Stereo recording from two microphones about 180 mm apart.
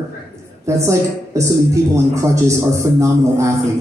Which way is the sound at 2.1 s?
15° right (ahead or behind).